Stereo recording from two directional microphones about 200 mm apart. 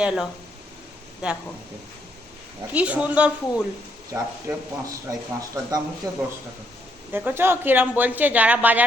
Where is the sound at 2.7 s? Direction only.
5° right (ahead or behind).